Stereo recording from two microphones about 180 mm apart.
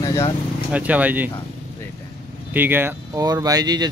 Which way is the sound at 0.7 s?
10° right (ahead or behind).